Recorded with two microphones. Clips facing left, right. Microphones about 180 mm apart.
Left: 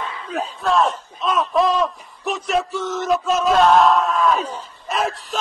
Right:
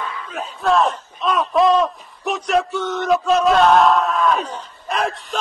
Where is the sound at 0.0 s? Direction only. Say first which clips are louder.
Left 2 dB; 30° left (ahead or behind).